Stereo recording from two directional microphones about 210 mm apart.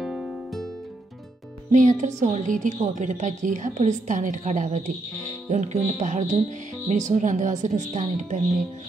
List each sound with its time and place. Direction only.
0.0 s music: centre (ahead or behind)
1.7 s a woman's voice: 35° right (ahead or behind)